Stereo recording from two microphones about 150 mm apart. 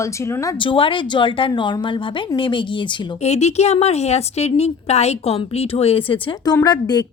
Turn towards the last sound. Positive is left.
turn(degrees=25)  # may be behind; listen again after turning